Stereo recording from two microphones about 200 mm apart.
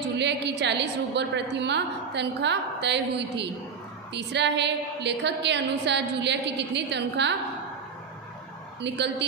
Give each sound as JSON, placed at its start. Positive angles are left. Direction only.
{"t": 0.2, "sound": "a woman's voice", "side_deg": -60}
{"t": 8.8, "sound": "a woman's voice", "side_deg": -60}